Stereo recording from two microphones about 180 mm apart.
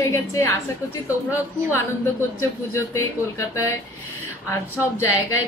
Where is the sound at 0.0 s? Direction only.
15° left (ahead or behind).